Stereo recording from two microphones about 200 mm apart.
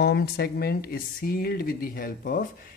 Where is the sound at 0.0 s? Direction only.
50° left (ahead or behind).